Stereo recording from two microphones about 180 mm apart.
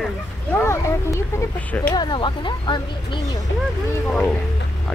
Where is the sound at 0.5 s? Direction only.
15° left (ahead or behind).